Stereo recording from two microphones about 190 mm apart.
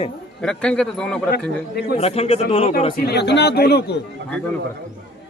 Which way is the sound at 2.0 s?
30° left (ahead or behind).